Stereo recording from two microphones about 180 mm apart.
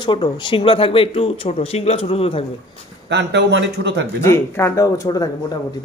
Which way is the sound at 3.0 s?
70° right (ahead or behind).